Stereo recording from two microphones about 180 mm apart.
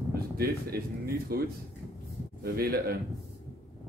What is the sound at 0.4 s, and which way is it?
Speech, 55° right (ahead or behind).